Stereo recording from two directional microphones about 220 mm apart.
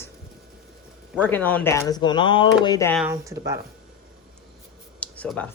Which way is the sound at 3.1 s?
15° right (ahead or behind).